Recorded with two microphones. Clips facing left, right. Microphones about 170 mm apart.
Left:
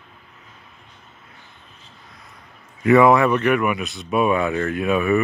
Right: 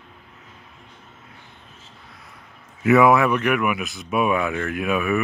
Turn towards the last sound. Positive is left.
turn(degrees=0)  # may be behind; listen again after turning